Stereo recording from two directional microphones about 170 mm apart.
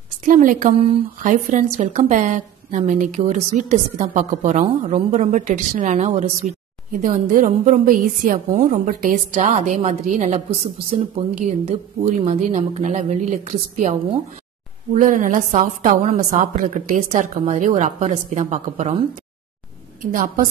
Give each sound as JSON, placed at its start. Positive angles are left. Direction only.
{"t": 0.2, "sound": "a woman's voice", "side_deg": -50}
{"t": 20.0, "sound": "a woman's voice", "side_deg": -55}